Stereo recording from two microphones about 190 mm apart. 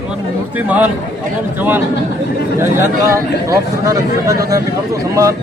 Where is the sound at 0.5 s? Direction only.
10° right (ahead or behind).